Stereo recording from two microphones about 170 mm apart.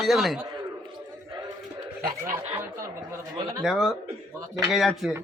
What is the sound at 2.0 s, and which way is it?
Speech, 55° right (ahead or behind).